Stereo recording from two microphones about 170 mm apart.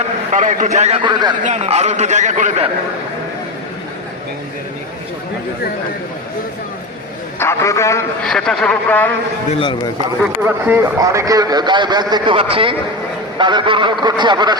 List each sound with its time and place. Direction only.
0.3 s a man's voice: 45° right (ahead or behind); by 1.4 s 25° right (ahead or behind)
1.5 s a man's voice: 40° right (ahead or behind)
7.3 s a man's voice: 15° left (ahead or behind)
8.2 s a man's voice: 5° left (ahead or behind)
9.5 s a man's voice: 30° left (ahead or behind)
10.4 s a man's voice: 10° right (ahead or behind)